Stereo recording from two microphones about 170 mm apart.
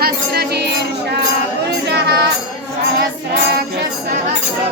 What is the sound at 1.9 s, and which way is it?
Music, 75° right (ahead or behind).